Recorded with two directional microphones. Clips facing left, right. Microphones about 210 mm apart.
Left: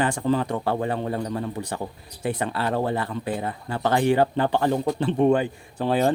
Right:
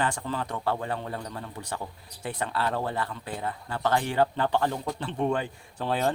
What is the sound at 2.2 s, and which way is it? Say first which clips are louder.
Speech: left 4 dB; 10° left (ahead or behind).